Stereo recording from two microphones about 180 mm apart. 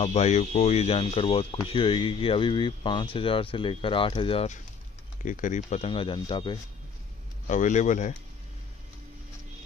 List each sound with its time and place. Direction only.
0.0 s speech: 35° left (ahead or behind)
5.2 s speech: 45° left (ahead or behind); by 6.6 s 25° left (ahead or behind)
7.4 s a man's voice: 45° left (ahead or behind)